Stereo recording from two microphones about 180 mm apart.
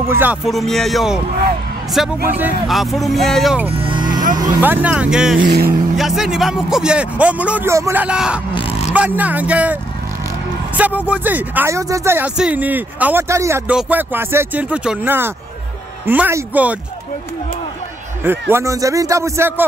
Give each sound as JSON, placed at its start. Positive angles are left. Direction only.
{"t": 0.0, "sound": "speech", "side_deg": -10}
{"t": 0.5, "sound": "speech", "side_deg": 0}
{"t": 2.2, "sound": "speech", "side_deg": -10}
{"t": 3.7, "sound": "music", "side_deg": -30}
{"t": 4.6, "sound": "speech", "side_deg": -10}
{"t": 5.4, "sound": "speech", "side_deg": -60}
{"t": 5.9, "sound": "speech", "side_deg": 0}
{"t": 8.5, "sound": "zipper", "side_deg": 35}
{"t": 8.9, "sound": "speech", "side_deg": -10}
{"t": 10.8, "sound": "speech", "side_deg": -10}
{"t": 18.2, "sound": "speech", "side_deg": -10}